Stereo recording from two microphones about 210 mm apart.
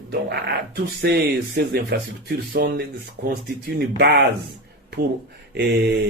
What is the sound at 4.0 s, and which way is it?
Speech, 50° right (ahead or behind).